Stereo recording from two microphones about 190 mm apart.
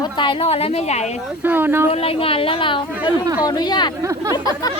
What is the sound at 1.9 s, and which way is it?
A woman's voice, 30° left (ahead or behind).